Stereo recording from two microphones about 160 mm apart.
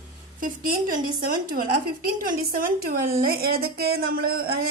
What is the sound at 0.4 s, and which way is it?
A woman's voice, 60° right (ahead or behind).